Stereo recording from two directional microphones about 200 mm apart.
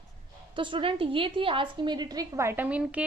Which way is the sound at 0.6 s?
25° right (ahead or behind).